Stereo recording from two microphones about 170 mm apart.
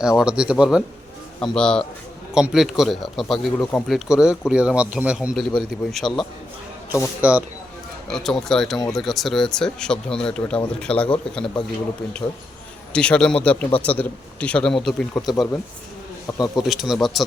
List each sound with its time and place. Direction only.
0.2 s speech: 5° right (ahead or behind)
3.6 s a man's voice: 10° left (ahead or behind)
3.8 s speech: 5° right (ahead or behind)
7.2 s speech: 10° right (ahead or behind)
8.1 s a man's voice: centre (ahead or behind)
12.9 s a man's voice: 5° left (ahead or behind)
16.2 s speech: 20° left (ahead or behind)
16.6 s speech: centre (ahead or behind)